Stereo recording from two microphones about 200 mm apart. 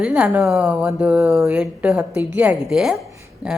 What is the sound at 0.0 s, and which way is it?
A woman's voice, 5° right (ahead or behind).